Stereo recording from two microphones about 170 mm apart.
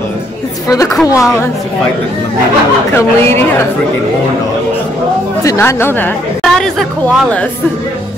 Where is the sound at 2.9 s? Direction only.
15° left (ahead or behind).